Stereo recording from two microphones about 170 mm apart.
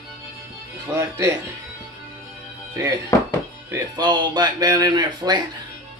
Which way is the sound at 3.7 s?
25° right (ahead or behind).